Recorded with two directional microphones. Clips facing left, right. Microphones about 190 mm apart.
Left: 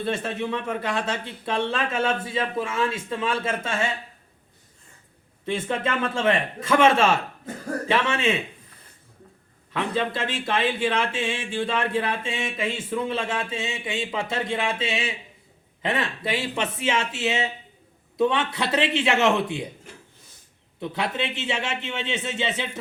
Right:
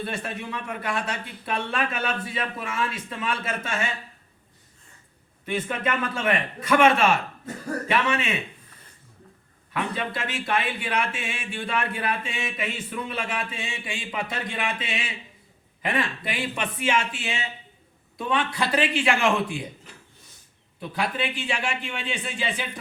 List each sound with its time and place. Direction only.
0.0 s speech: 25° left (ahead or behind)
5.5 s speech: 25° left (ahead or behind)
9.7 s speech: 25° left (ahead or behind)
20.7 s speech: 25° left (ahead or behind)